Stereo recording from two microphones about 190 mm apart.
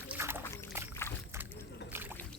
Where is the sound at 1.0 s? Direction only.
15° left (ahead or behind).